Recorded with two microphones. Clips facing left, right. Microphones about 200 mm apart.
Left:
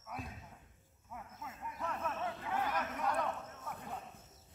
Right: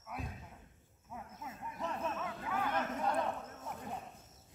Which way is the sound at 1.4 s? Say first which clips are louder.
Right 1 dB; 25° right (ahead or behind).